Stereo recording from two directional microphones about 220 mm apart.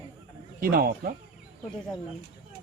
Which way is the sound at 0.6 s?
40° right (ahead or behind).